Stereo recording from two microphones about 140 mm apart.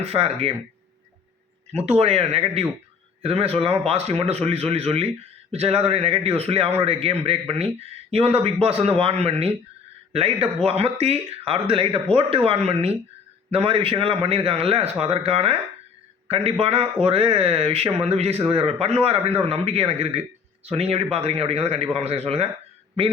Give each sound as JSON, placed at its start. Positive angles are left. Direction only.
{"t": 0.0, "sound": "speech", "side_deg": -45}
{"t": 1.7, "sound": "speech", "side_deg": -50}